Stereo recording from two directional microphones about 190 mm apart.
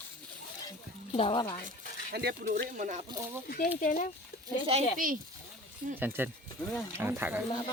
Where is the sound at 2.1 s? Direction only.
60° right (ahead or behind).